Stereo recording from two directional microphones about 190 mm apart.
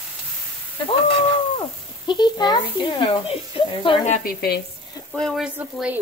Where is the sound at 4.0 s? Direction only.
45° left (ahead or behind).